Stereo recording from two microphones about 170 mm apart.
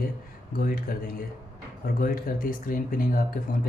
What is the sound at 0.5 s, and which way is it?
Speech, 60° left (ahead or behind).